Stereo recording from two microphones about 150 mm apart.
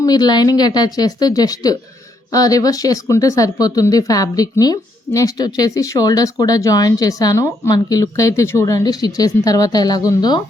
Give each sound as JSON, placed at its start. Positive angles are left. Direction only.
{"t": 0.0, "sound": "a woman's voice", "side_deg": 25}